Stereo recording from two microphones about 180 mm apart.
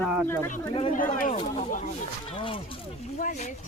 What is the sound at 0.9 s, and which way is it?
Speech, 50° left (ahead or behind).